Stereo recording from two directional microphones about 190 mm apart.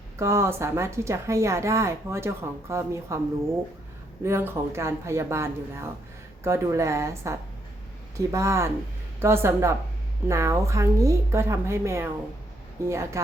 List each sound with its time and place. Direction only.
0.2 s speech: 15° right (ahead or behind)
4.2 s speech: 15° right (ahead or behind)